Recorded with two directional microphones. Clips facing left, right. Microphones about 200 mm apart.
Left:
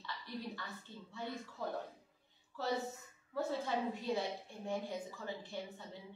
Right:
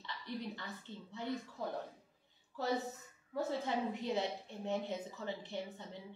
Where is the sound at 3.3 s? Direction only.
20° right (ahead or behind).